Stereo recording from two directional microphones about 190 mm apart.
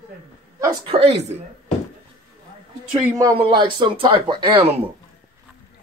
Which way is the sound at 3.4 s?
25° right (ahead or behind).